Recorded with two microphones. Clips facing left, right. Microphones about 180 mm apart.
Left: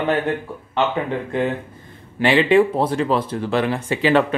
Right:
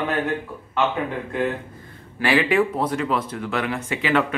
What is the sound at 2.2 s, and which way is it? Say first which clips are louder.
Speech: left 5 dB; 25° left (ahead or behind).